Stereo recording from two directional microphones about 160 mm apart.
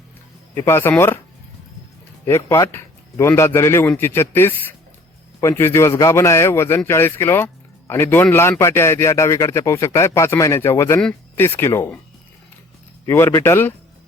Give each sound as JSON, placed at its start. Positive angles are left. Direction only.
{"t": 0.5, "sound": "a man's voice", "side_deg": 15}
{"t": 2.2, "sound": "a man's voice", "side_deg": 15}
{"t": 13.1, "sound": "a man's voice", "side_deg": 15}